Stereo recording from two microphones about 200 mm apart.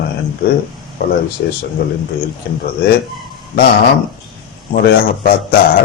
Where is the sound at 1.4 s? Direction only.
55° left (ahead or behind).